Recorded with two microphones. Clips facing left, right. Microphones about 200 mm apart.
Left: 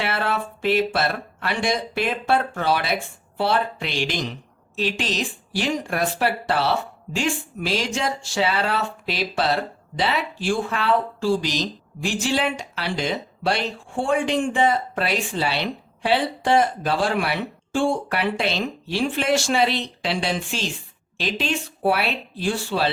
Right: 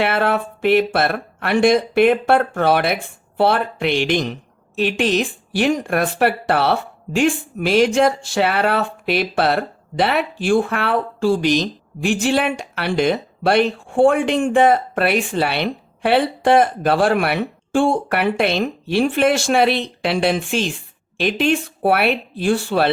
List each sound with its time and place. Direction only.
0.0 s speech: 55° right (ahead or behind)